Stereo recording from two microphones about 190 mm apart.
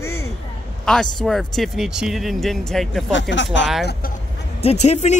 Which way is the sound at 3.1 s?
75° left (ahead or behind).